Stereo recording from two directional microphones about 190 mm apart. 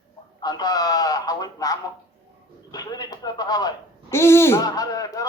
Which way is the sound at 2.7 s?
20° left (ahead or behind).